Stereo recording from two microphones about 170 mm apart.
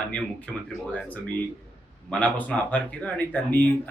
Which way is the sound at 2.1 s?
10° left (ahead or behind).